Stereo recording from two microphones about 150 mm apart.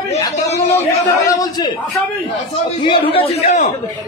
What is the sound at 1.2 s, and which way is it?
Speech, 25° left (ahead or behind).